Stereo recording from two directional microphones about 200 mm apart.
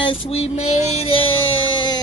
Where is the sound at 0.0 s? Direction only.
25° left (ahead or behind).